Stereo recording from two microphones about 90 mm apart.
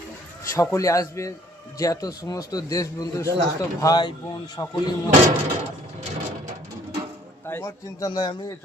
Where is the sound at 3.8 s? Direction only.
50° left (ahead or behind).